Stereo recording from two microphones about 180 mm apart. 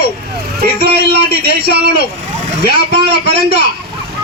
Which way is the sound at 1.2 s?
55° left (ahead or behind).